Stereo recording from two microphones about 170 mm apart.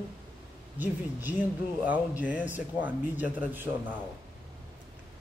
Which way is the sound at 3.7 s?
25° right (ahead or behind).